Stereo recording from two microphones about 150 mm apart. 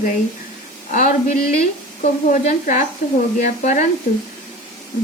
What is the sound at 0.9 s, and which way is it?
Speech, 55° left (ahead or behind).